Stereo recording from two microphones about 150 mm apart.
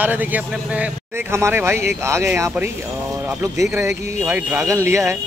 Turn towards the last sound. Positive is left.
turn(degrees=-20)  # may be behind; listen again after turning